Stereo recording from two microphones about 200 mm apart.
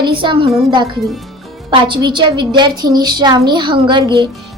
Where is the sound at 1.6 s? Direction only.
25° right (ahead or behind).